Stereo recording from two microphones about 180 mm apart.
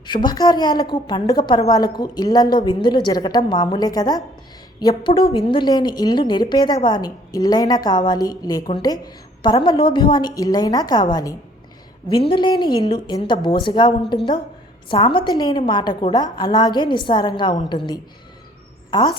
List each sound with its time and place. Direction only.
0.0 s a woman's voice: 25° left (ahead or behind)